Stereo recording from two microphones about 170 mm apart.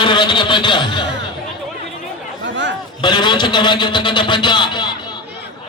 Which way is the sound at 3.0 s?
25° left (ahead or behind).